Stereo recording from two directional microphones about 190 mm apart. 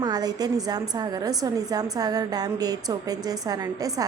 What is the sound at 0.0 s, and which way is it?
A woman's voice, 20° right (ahead or behind).